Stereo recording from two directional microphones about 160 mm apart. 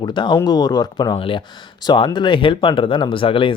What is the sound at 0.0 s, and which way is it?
Speech, 30° left (ahead or behind).